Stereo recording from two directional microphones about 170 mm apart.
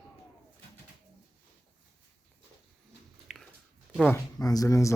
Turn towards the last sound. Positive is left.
turn(degrees=20)  # may be behind; listen again after turning